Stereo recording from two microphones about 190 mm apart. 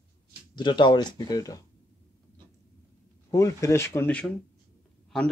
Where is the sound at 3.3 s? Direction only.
15° left (ahead or behind).